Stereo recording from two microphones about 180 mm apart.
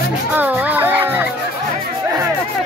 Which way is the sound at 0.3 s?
10° right (ahead or behind).